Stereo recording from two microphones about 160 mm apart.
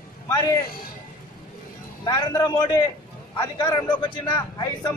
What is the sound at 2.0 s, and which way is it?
Speech, 25° left (ahead or behind).